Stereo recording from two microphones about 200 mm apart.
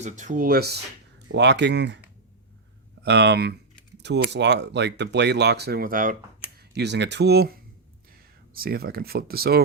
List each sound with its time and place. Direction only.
0.0 s speech: 40° right (ahead or behind); by 2.0 s 60° right (ahead or behind)
3.0 s speech: 55° right (ahead or behind)
6.7 s speech: 60° right (ahead or behind)